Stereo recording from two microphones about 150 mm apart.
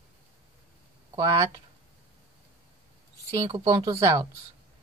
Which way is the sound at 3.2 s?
25° right (ahead or behind).